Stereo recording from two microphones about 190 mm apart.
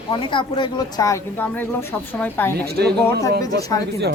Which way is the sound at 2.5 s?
55° right (ahead or behind).